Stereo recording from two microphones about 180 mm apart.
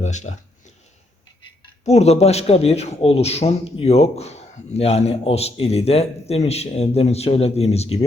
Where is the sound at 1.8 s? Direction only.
35° left (ahead or behind).